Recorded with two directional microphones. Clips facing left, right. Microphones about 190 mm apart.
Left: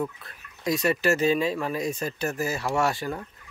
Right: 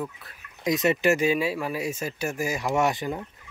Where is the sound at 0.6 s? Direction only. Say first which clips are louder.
Right 2 dB; 20° right (ahead or behind).